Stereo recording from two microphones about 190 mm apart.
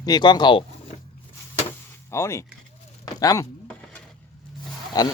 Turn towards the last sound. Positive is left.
turn(degrees=20)  # may be behind; listen again after turning